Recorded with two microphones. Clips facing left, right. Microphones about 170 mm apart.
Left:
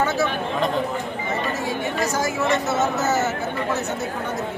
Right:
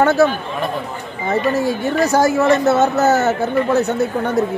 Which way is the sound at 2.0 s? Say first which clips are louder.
Right 11 dB; 65° right (ahead or behind).